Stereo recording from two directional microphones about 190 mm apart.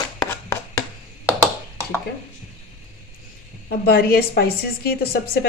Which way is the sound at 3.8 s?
55° left (ahead or behind).